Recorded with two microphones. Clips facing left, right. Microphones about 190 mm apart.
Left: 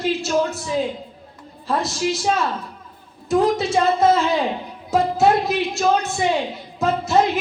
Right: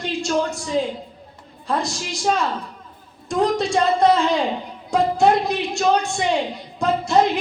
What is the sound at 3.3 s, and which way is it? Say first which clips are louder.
A woman's voice: left 2 dB; 5° left (ahead or behind).